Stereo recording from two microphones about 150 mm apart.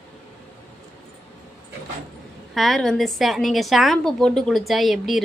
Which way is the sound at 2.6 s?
Centre (ahead or behind).